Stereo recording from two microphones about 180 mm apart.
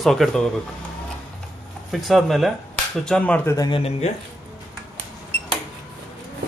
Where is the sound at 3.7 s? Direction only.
35° left (ahead or behind).